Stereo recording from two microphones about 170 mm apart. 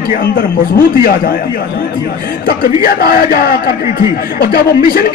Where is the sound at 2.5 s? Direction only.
60° left (ahead or behind).